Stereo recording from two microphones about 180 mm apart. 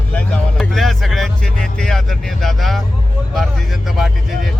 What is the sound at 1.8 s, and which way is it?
Speech, 5° left (ahead or behind).